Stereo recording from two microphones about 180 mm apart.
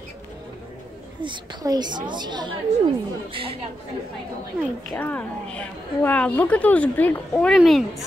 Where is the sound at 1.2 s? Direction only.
25° right (ahead or behind).